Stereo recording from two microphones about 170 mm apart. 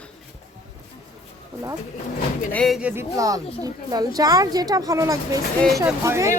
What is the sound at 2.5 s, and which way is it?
Speech, 5° left (ahead or behind).